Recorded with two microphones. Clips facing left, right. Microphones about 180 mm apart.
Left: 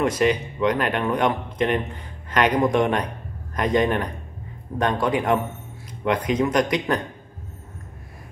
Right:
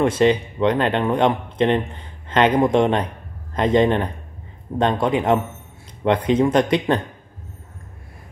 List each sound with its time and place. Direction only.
0.0 s speech: 30° right (ahead or behind)